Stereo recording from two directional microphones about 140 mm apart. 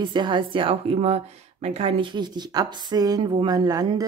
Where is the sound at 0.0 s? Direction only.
30° right (ahead or behind).